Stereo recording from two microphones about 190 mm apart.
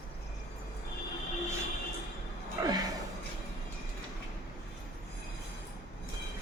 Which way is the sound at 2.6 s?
15° right (ahead or behind).